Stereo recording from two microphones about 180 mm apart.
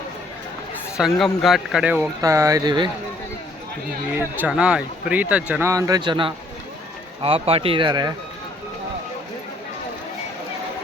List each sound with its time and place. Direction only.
0.9 s speech: centre (ahead or behind)
2.2 s speech: 15° right (ahead or behind)
4.4 s speech: 5° right (ahead or behind); by 8.1 s 25° right (ahead or behind)